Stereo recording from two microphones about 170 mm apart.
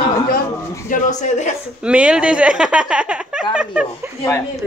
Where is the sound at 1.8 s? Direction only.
5° right (ahead or behind).